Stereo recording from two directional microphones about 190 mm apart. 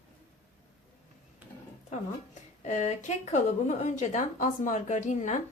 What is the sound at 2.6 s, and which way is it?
A woman's voice, 40° left (ahead or behind).